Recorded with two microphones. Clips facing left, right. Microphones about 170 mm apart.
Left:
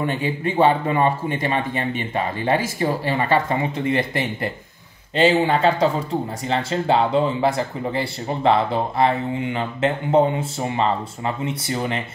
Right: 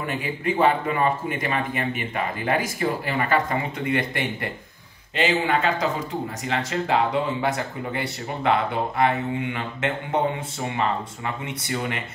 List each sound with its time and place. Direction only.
0.0 s speech: 30° left (ahead or behind)